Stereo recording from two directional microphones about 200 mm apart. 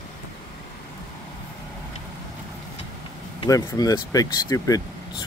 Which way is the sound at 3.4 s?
20° left (ahead or behind).